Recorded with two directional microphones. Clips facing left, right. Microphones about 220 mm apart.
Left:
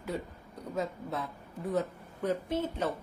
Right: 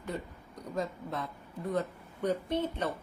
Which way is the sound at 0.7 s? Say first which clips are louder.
Left 1 dB; 5° left (ahead or behind).